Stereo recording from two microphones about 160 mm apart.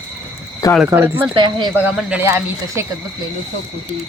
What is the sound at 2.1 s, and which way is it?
Speech, 10° right (ahead or behind).